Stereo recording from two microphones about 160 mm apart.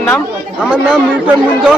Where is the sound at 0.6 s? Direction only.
5° right (ahead or behind).